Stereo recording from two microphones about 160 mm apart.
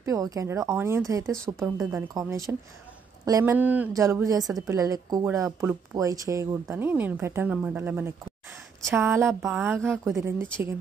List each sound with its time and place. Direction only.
0.0 s speech: 20° right (ahead or behind)
3.5 s speech: 10° right (ahead or behind)